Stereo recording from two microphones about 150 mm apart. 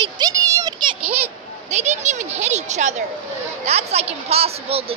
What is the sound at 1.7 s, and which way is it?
Speech, 50° right (ahead or behind).